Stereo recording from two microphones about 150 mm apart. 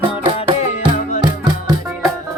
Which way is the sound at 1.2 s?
25° right (ahead or behind).